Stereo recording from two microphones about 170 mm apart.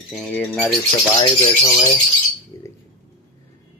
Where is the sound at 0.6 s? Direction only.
Centre (ahead or behind).